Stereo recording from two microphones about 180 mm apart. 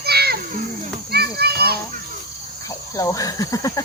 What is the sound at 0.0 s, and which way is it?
Children playing, 60° right (ahead or behind).